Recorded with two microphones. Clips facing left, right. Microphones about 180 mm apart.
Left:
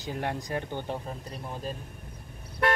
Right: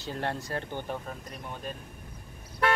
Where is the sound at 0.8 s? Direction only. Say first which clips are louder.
Left 1 dB; 30° left (ahead or behind).